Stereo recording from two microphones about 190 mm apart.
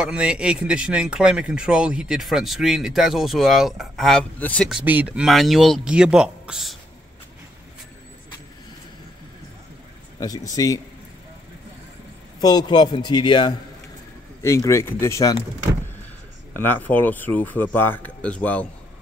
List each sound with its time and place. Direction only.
0.0 s speech: 5° right (ahead or behind)
4.6 s speech: 5° right (ahead or behind)
10.2 s a man's voice: 20° left (ahead or behind)
12.4 s a man's voice: 20° left (ahead or behind)
16.5 s a man's voice: 10° left (ahead or behind)